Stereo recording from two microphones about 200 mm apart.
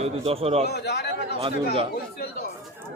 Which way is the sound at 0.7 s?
55° left (ahead or behind).